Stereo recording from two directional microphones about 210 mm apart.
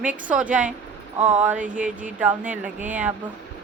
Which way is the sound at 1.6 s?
40° right (ahead or behind).